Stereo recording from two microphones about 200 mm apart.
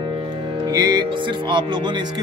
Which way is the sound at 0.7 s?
20° right (ahead or behind).